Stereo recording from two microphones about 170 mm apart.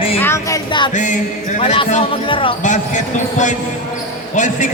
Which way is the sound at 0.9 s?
45° left (ahead or behind).